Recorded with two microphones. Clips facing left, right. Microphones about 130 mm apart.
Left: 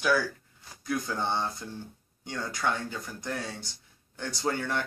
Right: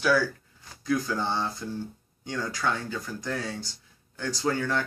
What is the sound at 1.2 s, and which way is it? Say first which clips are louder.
Speech: right 1 dB; 20° left (ahead or behind).